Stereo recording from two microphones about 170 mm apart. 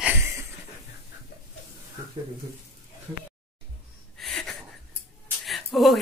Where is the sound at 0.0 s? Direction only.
15° right (ahead or behind).